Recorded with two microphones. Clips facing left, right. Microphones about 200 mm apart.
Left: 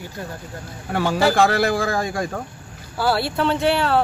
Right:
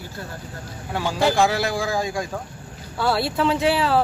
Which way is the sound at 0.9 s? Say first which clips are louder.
Left 2 dB; 60° left (ahead or behind).